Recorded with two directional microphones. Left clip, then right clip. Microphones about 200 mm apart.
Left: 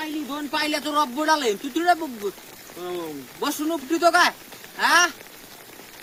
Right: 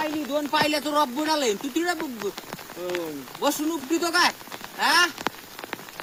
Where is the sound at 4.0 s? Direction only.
10° right (ahead or behind).